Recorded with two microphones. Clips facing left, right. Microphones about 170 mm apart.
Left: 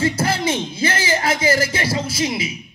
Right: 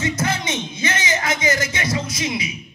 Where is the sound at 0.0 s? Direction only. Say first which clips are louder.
Left 4 dB; 30° left (ahead or behind).